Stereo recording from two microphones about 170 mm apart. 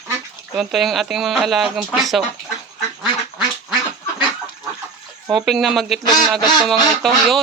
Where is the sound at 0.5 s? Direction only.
Centre (ahead or behind).